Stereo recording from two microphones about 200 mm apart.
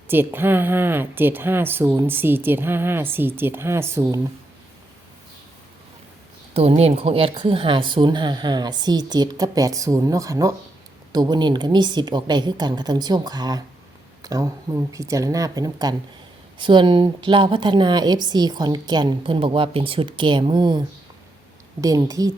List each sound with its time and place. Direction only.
0.1 s speech: 10° right (ahead or behind)
6.5 s a woman's voice: 30° right (ahead or behind)